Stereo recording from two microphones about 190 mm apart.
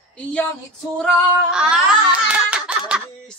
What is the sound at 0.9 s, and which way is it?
A man's voice, 5° right (ahead or behind).